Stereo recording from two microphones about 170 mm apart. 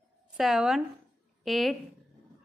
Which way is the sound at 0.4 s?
Centre (ahead or behind).